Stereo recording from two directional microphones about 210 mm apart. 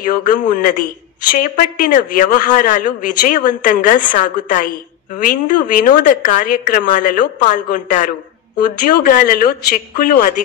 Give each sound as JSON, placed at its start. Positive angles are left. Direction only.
{"t": 0.0, "sound": "a man's voice", "side_deg": 40}